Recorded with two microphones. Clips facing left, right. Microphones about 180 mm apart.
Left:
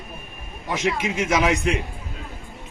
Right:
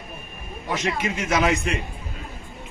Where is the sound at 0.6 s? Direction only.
10° left (ahead or behind).